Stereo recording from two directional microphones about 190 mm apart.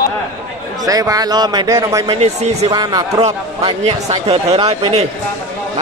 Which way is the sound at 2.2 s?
35° right (ahead or behind).